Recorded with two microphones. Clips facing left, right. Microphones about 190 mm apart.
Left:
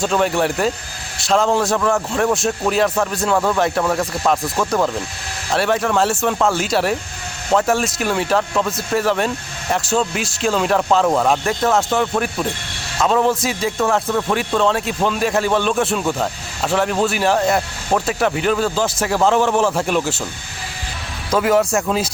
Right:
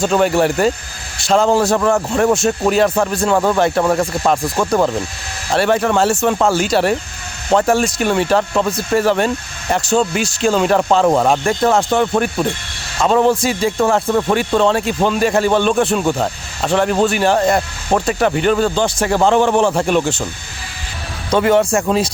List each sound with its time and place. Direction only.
0.0 s a man's voice: centre (ahead or behind)
21.2 s a man's voice: centre (ahead or behind)